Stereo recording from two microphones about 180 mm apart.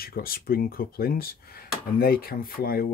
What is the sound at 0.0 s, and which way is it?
Speech, 55° left (ahead or behind).